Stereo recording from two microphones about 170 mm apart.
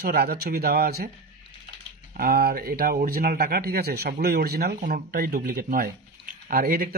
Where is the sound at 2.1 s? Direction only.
65° right (ahead or behind).